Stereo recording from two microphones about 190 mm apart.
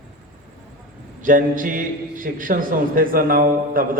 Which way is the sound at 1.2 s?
45° right (ahead or behind).